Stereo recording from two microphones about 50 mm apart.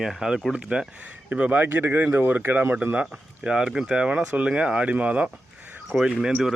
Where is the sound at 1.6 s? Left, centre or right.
Right.